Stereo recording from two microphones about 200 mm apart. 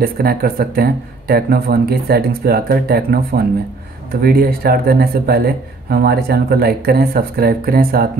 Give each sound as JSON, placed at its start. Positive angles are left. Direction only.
{"t": 0.0, "sound": "speech", "side_deg": -50}